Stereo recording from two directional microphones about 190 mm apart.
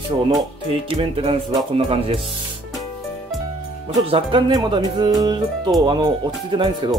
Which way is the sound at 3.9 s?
25° right (ahead or behind).